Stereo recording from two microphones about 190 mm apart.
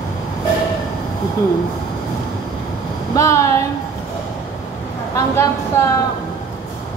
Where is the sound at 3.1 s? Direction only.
15° left (ahead or behind).